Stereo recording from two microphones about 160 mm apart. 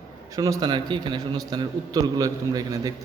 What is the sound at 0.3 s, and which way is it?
A man's voice, 20° right (ahead or behind).